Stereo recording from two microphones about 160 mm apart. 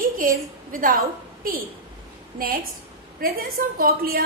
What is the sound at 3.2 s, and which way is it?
A woman's voice, 65° right (ahead or behind).